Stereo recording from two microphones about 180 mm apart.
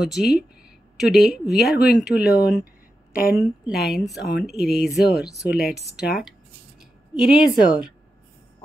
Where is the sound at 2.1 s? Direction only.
65° left (ahead or behind).